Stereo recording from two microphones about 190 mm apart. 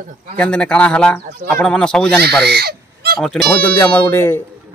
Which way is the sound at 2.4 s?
55° right (ahead or behind).